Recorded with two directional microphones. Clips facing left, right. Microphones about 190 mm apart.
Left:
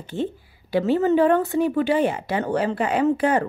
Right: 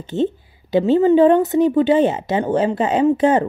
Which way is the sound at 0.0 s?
25° right (ahead or behind).